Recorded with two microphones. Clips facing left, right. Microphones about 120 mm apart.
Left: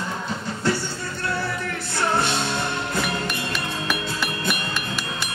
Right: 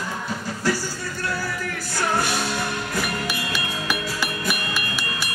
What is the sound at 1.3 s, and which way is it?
Music, 25° left (ahead or behind).